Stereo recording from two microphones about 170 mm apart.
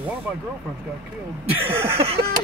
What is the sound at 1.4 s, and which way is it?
Chuckle, 35° right (ahead or behind).